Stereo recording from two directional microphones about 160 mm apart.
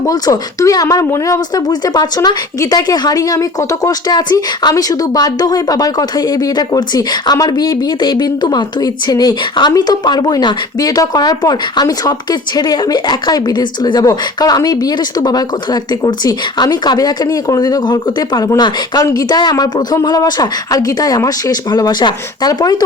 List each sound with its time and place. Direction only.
0.0 s speech: 20° left (ahead or behind)